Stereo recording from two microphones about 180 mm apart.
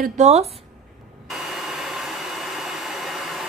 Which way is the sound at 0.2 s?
40° right (ahead or behind).